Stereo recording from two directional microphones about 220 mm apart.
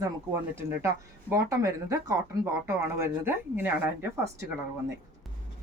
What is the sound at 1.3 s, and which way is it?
Speech, 15° right (ahead or behind).